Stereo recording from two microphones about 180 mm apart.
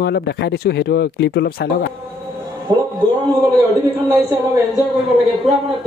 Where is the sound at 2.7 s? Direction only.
20° right (ahead or behind).